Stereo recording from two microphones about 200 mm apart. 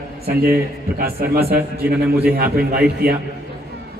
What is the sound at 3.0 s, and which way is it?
Speech, 50° right (ahead or behind).